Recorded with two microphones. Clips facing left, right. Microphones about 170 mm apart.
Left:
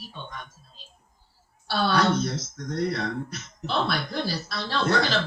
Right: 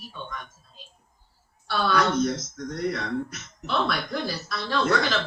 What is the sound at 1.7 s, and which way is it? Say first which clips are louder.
Speech: left 1 dB; 30° left (ahead or behind).